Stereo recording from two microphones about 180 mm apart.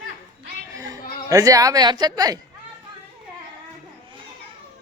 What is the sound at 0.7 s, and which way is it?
Speech, 20° right (ahead or behind).